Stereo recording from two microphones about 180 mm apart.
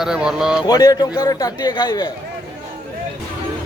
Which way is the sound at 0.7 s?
20° left (ahead or behind).